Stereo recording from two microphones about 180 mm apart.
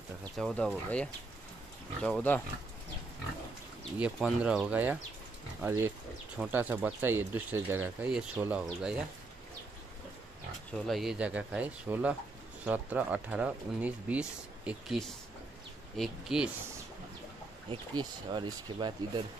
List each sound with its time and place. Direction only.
0.4 s speech: 5° left (ahead or behind)
2.0 s speech: 10° left (ahead or behind)
4.0 s speech: 5° right (ahead or behind)
10.9 s speech: centre (ahead or behind)
17.6 s speech: 25° right (ahead or behind)